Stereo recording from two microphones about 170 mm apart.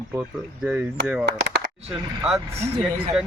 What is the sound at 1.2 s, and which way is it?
Speech, 85° right.